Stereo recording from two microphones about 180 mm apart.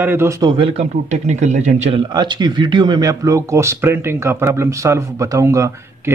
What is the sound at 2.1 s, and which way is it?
Speech, 25° right (ahead or behind).